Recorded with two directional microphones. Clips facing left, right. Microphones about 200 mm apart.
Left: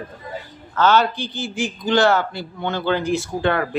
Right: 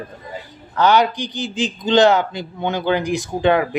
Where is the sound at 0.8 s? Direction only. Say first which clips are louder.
Right 2 dB; 15° right (ahead or behind).